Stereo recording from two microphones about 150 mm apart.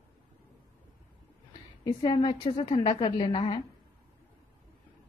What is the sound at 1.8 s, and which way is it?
A woman's voice, 30° left (ahead or behind).